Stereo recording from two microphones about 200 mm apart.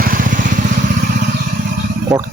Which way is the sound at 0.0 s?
45° right (ahead or behind).